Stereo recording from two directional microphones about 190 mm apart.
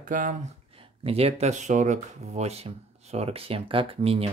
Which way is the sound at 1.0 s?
30° right (ahead or behind).